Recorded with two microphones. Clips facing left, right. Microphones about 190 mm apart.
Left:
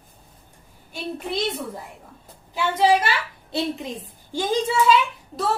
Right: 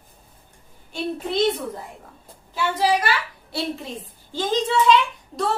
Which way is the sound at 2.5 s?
25° left (ahead or behind).